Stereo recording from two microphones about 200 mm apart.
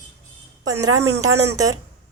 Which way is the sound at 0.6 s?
15° right (ahead or behind).